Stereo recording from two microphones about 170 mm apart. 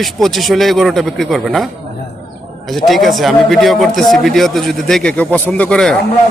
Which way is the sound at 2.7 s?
Centre (ahead or behind).